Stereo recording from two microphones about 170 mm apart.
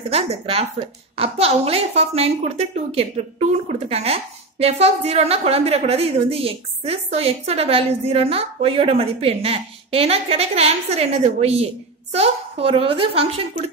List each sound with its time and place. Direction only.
0.1 s a woman's voice: 35° right (ahead or behind)